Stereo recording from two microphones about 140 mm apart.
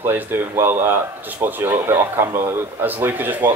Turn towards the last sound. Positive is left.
turn(degrees=-15)  # may be behind; listen again after turning